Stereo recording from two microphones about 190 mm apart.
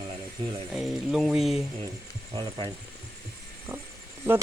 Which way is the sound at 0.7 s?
Centre (ahead or behind).